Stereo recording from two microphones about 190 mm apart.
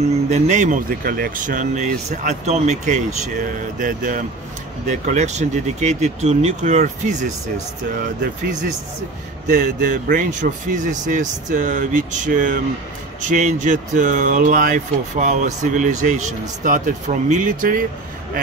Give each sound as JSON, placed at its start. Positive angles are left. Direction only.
{"t": 0.3, "sound": "speech", "side_deg": -40}
{"t": 9.5, "sound": "speech", "side_deg": -45}